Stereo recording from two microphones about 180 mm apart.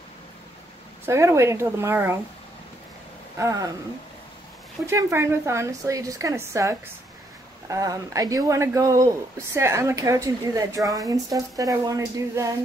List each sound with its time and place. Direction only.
1.0 s speech: 15° right (ahead or behind)
3.3 s speech: 15° right (ahead or behind)
4.8 s speech: 15° right (ahead or behind)